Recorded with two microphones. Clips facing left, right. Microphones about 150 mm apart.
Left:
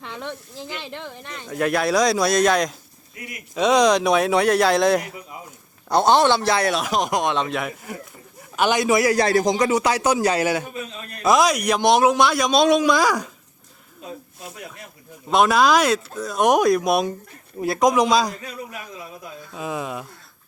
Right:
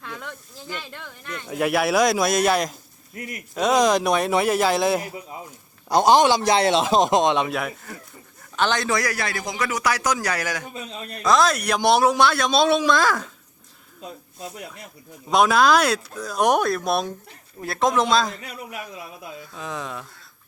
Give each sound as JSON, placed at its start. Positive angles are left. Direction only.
{"t": 0.0, "sound": "snake", "side_deg": 25}
{"t": 0.8, "sound": "speech", "side_deg": 25}
{"t": 1.5, "sound": "speech", "side_deg": -10}
{"t": 7.4, "sound": "speech", "side_deg": 0}
{"t": 8.5, "sound": "speech", "side_deg": 15}
{"t": 9.4, "sound": "speech", "side_deg": 35}
{"t": 10.1, "sound": "speech", "side_deg": 15}
{"t": 11.8, "sound": "speech", "side_deg": -5}
{"t": 15.3, "sound": "speech", "side_deg": 0}
{"t": 17.6, "sound": "speech", "side_deg": 15}
{"t": 17.8, "sound": "speech", "side_deg": 0}
{"t": 19.5, "sound": "speech", "side_deg": 15}